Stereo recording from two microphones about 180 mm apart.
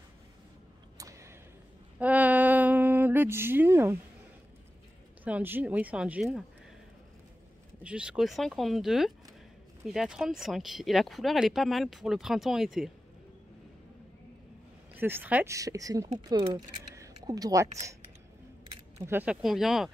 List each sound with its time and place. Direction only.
0.9 s a sound: 20° right (ahead or behind)
5.2 s speech: 10° right (ahead or behind)
7.8 s speech: 5° right (ahead or behind)
15.0 s speech: 10° right (ahead or behind)
19.0 s speech: 10° right (ahead or behind)